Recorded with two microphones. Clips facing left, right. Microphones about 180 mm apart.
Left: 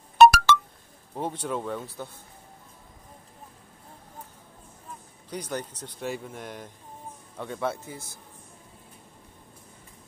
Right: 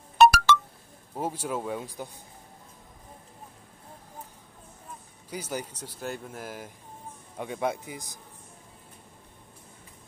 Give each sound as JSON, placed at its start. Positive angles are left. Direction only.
{"t": 0.2, "sound": "telephone dialing", "side_deg": 70}
{"t": 1.1, "sound": "speech", "side_deg": -10}
{"t": 5.3, "sound": "speech", "side_deg": -10}